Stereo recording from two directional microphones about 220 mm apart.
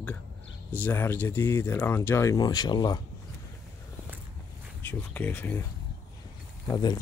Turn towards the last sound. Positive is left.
turn(degrees=20)  # may be behind; listen again after turning